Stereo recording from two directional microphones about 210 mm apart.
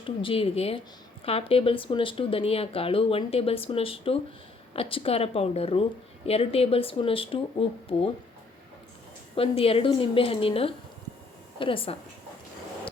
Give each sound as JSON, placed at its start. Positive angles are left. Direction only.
{"t": 0.0, "sound": "speech", "side_deg": 25}
{"t": 9.3, "sound": "speech", "side_deg": 25}